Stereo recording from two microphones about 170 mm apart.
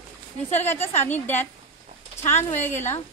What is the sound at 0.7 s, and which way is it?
Speech, 10° left (ahead or behind).